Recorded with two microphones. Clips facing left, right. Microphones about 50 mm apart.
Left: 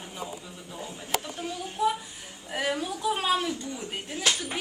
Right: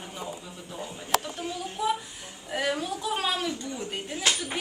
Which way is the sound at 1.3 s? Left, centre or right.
Centre.